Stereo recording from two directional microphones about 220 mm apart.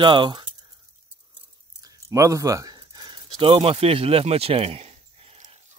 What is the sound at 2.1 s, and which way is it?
Speech, 15° right (ahead or behind).